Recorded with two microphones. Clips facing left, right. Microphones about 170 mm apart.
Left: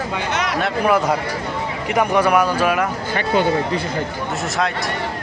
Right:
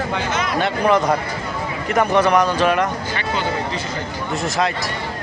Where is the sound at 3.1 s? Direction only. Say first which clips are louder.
Left 5 dB; 55° left (ahead or behind).